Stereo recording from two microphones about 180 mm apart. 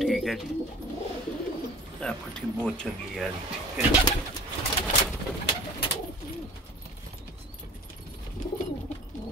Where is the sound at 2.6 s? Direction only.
5° left (ahead or behind).